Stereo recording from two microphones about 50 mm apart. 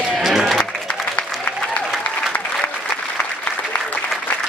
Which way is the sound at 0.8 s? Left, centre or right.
Left.